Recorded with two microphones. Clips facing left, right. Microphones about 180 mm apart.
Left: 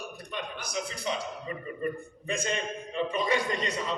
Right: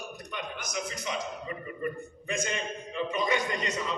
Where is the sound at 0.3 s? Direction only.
30° left (ahead or behind).